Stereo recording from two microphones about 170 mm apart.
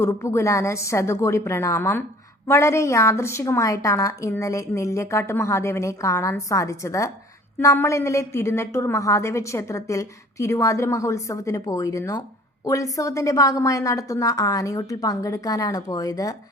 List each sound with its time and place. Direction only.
0.0 s a woman's voice: 15° left (ahead or behind)